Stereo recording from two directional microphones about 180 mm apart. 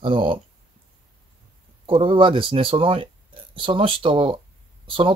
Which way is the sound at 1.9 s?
30° right (ahead or behind).